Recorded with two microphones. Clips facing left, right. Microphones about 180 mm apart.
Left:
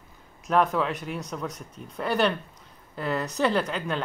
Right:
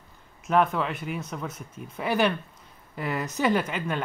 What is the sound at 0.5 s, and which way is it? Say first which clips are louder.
A woman's voice: even; centre (ahead or behind).